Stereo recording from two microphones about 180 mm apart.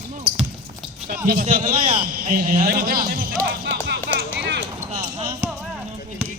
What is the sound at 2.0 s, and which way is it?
Speech, 55° right (ahead or behind).